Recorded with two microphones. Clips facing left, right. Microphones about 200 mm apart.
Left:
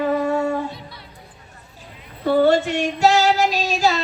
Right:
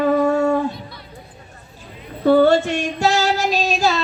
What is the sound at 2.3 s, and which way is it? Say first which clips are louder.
Child singing: right 3 dB; 50° right (ahead or behind).